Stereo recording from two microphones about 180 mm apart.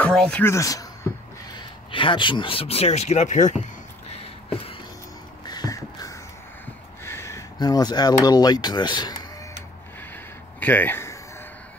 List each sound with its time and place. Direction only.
0.0 s speech: 5° left (ahead or behind)
1.9 s speech: 30° left (ahead or behind)
4.2 s a sound: 35° left (ahead or behind)
5.5 s a sound: 20° left (ahead or behind)
7.1 s speech: 15° left (ahead or behind)
10.6 s speech: 10° left (ahead or behind)